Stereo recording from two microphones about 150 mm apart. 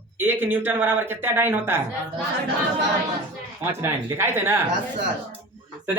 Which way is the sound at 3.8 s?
15° right (ahead or behind).